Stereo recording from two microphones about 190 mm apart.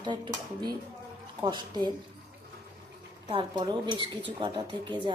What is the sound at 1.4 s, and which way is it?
Speech, 20° right (ahead or behind).